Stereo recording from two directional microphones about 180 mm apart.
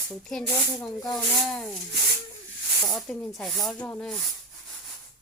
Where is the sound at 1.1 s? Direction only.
5° left (ahead or behind).